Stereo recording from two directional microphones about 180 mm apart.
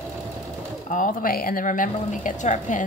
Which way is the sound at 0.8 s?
45° left (ahead or behind).